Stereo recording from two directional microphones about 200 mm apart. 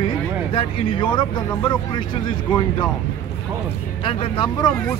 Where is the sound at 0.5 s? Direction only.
25° left (ahead or behind).